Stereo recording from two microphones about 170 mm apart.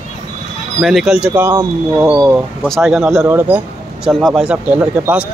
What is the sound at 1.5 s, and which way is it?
Speech, 20° right (ahead or behind).